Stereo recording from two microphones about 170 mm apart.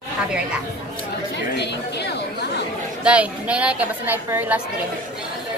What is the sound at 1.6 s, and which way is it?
Speech, 90° left.